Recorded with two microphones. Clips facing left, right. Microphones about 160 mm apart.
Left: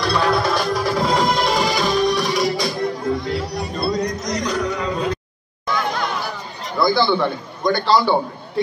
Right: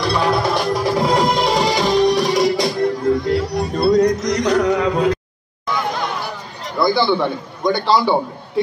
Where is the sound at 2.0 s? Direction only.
35° right (ahead or behind).